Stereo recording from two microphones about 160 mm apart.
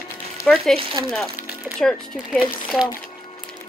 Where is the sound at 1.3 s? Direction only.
10° right (ahead or behind).